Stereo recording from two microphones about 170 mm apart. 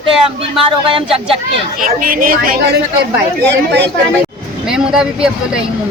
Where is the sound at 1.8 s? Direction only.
55° right (ahead or behind).